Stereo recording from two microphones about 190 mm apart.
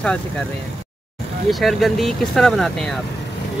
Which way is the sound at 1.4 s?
Centre (ahead or behind).